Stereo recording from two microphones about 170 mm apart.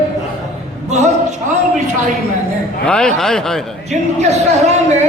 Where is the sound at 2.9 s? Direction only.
5° left (ahead or behind).